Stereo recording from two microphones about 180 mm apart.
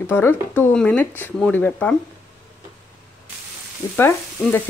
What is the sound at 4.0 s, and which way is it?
Frying, 10° left (ahead or behind).